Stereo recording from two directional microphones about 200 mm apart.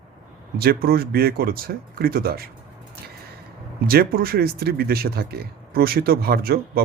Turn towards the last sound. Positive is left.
turn(degrees=-50)  # may be behind; listen again after turning